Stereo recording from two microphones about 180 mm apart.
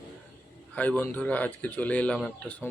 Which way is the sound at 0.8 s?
10° left (ahead or behind).